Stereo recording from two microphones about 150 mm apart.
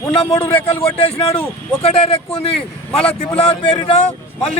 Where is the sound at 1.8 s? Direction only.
40° left (ahead or behind).